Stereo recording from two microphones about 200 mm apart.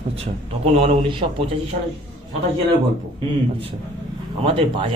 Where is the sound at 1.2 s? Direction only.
35° right (ahead or behind).